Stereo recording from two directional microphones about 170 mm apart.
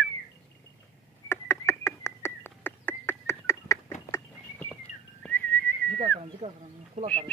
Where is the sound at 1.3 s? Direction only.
15° left (ahead or behind).